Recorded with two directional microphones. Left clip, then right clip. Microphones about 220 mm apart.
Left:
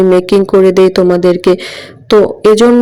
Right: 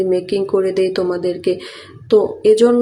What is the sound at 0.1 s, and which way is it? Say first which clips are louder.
Speech: left 9 dB; 35° left (ahead or behind).